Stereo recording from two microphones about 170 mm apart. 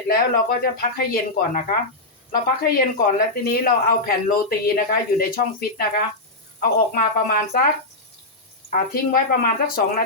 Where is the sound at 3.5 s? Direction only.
60° left (ahead or behind).